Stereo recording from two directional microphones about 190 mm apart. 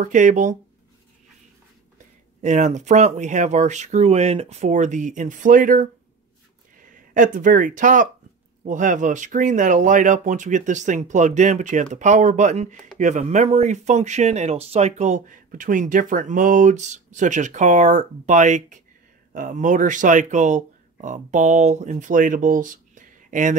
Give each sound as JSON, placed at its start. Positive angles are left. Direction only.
{"t": 0.0, "sound": "speech", "side_deg": -40}
{"t": 2.4, "sound": "speech", "side_deg": -40}